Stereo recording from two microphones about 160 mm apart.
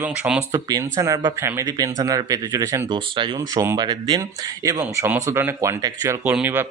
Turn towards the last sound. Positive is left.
turn(degrees=-15)  # may be behind; listen again after turning